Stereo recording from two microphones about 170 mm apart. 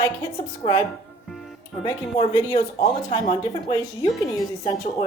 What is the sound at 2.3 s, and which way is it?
Speech, 20° left (ahead or behind).